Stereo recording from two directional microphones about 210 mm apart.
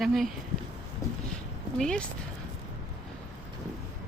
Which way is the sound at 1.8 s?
5° left (ahead or behind).